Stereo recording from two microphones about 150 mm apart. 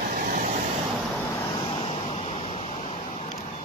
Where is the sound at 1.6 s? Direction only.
40° left (ahead or behind).